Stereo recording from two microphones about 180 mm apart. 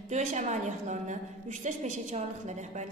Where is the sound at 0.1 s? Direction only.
40° right (ahead or behind).